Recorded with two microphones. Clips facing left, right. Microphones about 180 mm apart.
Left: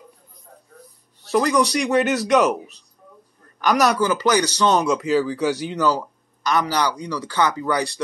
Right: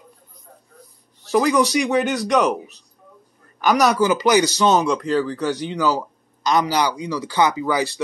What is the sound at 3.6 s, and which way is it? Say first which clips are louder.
Speech: right 2 dB; centre (ahead or behind).